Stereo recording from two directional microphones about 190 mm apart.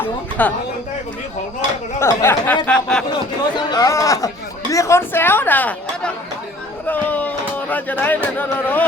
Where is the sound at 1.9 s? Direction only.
15° left (ahead or behind).